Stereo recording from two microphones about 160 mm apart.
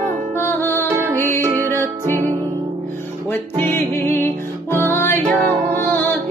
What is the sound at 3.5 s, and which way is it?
Music, 15° left (ahead or behind).